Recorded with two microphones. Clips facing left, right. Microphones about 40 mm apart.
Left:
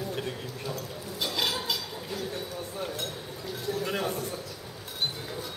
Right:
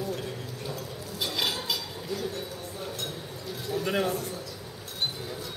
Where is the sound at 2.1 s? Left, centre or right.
Centre.